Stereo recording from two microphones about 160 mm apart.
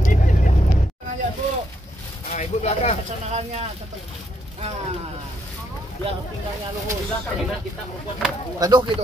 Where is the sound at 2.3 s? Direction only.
40° left (ahead or behind).